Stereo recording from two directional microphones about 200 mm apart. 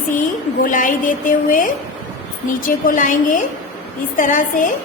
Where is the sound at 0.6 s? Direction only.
40° left (ahead or behind).